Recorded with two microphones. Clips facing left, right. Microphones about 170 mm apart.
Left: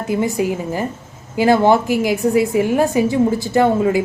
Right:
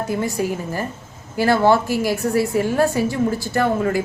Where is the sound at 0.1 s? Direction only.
15° left (ahead or behind).